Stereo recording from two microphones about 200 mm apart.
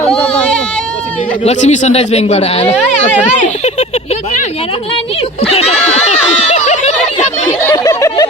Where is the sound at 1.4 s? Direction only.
35° left (ahead or behind).